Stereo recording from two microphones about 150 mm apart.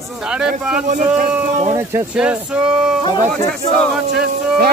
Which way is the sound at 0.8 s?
55° right (ahead or behind).